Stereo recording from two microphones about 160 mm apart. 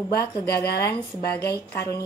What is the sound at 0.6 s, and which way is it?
Speech, 80° left.